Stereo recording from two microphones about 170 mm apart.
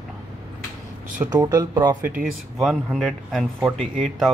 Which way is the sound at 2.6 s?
Centre (ahead or behind).